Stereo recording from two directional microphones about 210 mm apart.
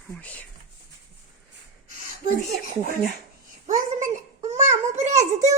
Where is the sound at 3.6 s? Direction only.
35° right (ahead or behind).